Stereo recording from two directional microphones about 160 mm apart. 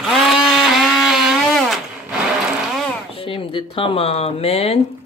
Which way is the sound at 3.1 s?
35° left (ahead or behind).